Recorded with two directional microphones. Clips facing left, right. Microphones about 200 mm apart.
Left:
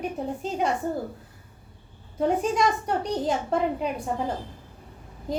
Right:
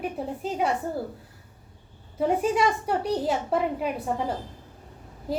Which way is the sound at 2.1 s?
5° right (ahead or behind).